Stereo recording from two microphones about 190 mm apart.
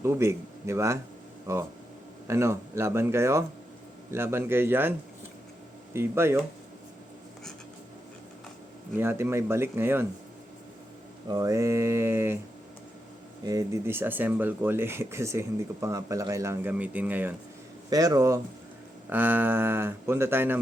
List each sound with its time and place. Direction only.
0.0 s speech: 15° right (ahead or behind)
9.0 s speech: 10° right (ahead or behind)
11.3 s speech: 20° right (ahead or behind)
13.4 s speech: 20° right (ahead or behind)